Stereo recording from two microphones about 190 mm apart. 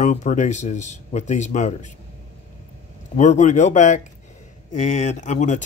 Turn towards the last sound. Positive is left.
turn(degrees=40)  # may be behind; listen again after turning